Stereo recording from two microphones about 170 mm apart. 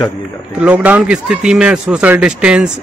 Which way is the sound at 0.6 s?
10° right (ahead or behind).